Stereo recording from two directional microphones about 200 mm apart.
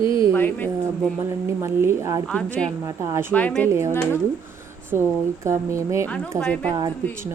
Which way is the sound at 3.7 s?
15° right (ahead or behind).